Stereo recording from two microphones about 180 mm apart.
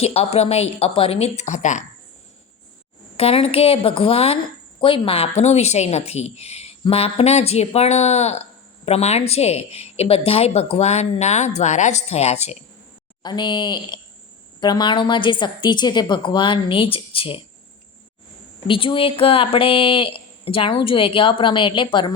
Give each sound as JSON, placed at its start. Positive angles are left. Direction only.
{"t": 0.0, "sound": "speech", "side_deg": 35}
{"t": 3.2, "sound": "speech", "side_deg": 35}
{"t": 13.2, "sound": "speech", "side_deg": 25}
{"t": 18.7, "sound": "speech", "side_deg": 30}